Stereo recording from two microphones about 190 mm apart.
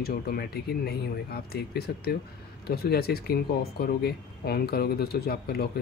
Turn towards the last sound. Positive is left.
turn(degrees=55)  # may be behind; listen again after turning